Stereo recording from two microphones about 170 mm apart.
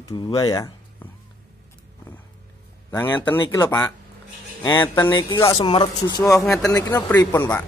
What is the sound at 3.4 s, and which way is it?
Speech, 25° left (ahead or behind).